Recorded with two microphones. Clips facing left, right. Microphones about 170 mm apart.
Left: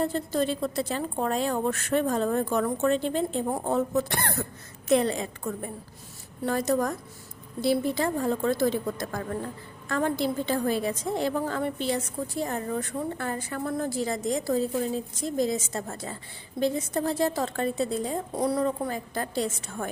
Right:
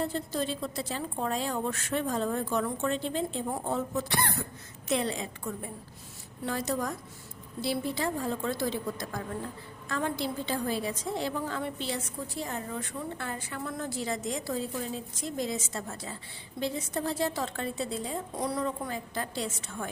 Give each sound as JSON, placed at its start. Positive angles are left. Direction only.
{"t": 0.0, "sound": "a woman's voice", "side_deg": 55}
{"t": 18.3, "sound": "a woman's voice", "side_deg": 35}